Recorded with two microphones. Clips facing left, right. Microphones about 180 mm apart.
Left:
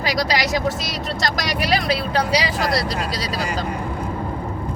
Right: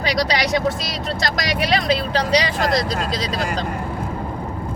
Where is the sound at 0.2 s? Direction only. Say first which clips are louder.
Right 2 dB; 5° left (ahead or behind).